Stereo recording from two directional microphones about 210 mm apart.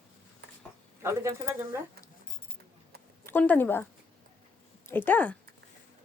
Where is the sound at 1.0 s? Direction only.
15° right (ahead or behind).